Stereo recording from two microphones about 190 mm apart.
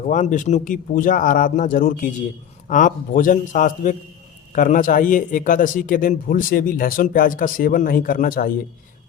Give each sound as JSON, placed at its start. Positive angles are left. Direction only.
{"t": 0.1, "sound": "a man's voice", "side_deg": 40}